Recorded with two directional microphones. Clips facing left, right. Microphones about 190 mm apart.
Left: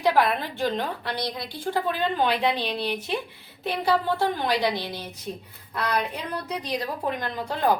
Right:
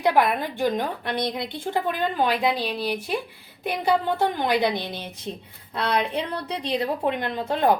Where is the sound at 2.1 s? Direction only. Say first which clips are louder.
Right 2 dB; 10° right (ahead or behind).